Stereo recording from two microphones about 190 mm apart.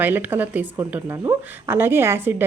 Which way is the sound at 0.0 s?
10° right (ahead or behind).